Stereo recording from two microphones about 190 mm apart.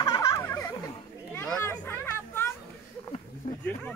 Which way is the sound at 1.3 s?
10° left (ahead or behind).